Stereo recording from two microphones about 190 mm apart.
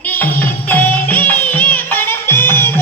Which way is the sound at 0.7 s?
10° left (ahead or behind).